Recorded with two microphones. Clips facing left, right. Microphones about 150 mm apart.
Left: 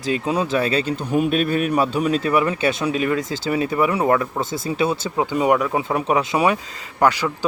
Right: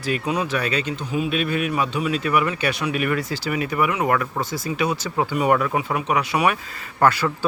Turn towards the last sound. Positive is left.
turn(degrees=15)  # may be behind; listen again after turning